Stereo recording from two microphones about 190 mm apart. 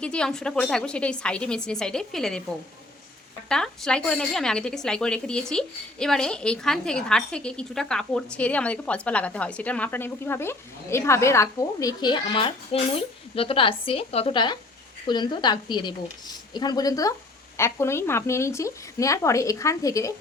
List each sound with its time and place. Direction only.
0.0 s a woman's voice: 5° left (ahead or behind)
3.5 s a woman's voice: 5° left (ahead or behind)